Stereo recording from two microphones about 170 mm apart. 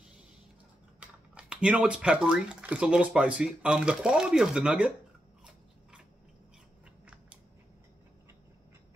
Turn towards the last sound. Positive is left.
turn(degrees=-5)  # may be behind; listen again after turning